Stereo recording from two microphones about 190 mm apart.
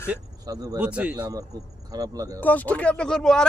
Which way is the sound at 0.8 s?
5° right (ahead or behind).